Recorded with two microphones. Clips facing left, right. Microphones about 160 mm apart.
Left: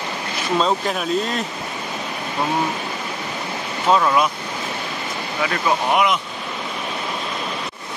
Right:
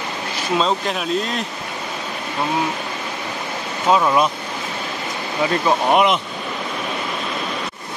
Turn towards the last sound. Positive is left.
turn(degrees=-25)  # may be behind; listen again after turning